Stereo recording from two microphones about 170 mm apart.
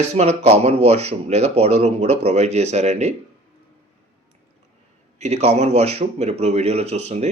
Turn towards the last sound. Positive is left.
turn(degrees=-40)  # may be behind; listen again after turning